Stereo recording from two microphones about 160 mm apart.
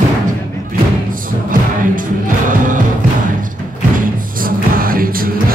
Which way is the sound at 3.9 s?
60° right (ahead or behind).